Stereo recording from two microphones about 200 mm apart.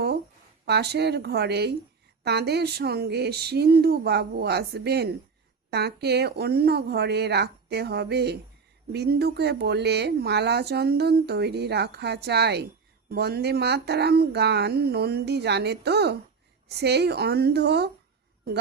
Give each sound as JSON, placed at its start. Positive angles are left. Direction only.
{"t": 0.6, "sound": "speech", "side_deg": -55}